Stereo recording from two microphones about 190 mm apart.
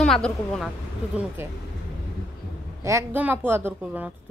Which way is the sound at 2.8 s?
15° right (ahead or behind).